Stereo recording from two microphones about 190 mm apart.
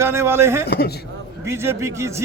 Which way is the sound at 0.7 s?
55° left (ahead or behind).